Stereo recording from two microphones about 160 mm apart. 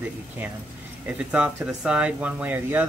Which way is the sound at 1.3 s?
5° right (ahead or behind).